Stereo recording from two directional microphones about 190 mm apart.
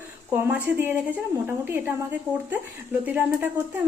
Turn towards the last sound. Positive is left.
turn(degrees=-10)  # may be behind; listen again after turning